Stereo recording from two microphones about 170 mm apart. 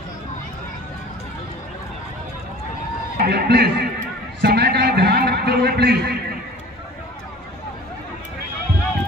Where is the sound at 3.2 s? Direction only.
75° right (ahead or behind).